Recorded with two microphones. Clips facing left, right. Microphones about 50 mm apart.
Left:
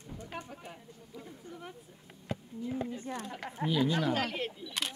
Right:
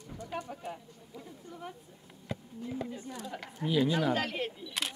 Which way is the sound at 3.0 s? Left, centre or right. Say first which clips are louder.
Left 3 dB; left.